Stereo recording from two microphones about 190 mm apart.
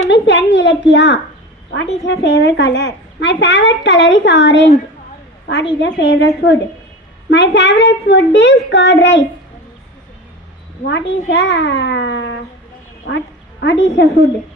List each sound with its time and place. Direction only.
0.1 s a sound: 70° left (ahead or behind)
1.7 s a woman's voice: 65° left (ahead or behind)
5.8 s a woman's voice: 65° left (ahead or behind)
10.8 s a child's voice: 65° left (ahead or behind)
13.1 s a woman's voice: 60° left (ahead or behind)